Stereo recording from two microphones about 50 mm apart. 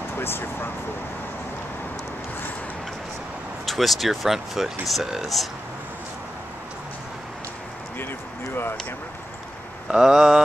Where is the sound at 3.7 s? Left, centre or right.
Centre.